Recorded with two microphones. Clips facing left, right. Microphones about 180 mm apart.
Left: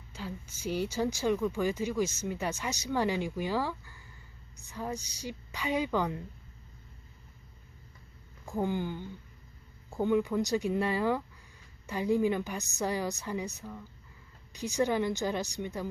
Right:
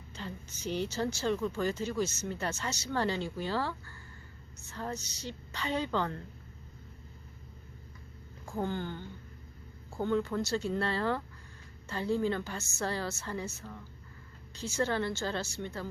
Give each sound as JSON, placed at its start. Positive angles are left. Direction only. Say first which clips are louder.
{"t": 0.1, "sound": "a woman's voice", "louder": "left 2 dB", "side_deg": 10}
{"t": 8.5, "sound": "a woman's voice", "louder": "left 3 dB", "side_deg": 10}